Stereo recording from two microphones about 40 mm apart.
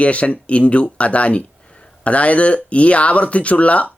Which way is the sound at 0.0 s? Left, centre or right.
Left.